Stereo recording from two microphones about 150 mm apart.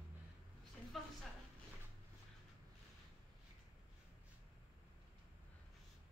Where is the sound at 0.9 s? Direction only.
Centre (ahead or behind).